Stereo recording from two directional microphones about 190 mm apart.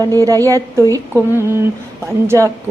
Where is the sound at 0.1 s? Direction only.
15° right (ahead or behind).